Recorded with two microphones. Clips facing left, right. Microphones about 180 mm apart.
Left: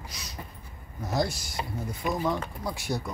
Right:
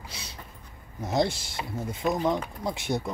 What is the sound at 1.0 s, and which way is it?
Speech, 25° right (ahead or behind).